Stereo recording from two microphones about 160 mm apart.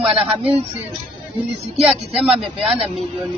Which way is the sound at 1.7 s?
Centre (ahead or behind).